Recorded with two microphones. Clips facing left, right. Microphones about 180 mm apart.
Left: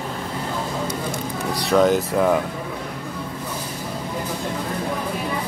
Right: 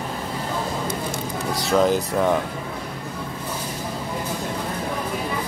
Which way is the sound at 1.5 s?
Centre (ahead or behind).